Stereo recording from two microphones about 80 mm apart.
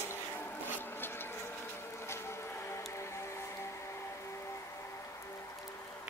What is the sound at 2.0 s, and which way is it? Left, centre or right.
Music, left.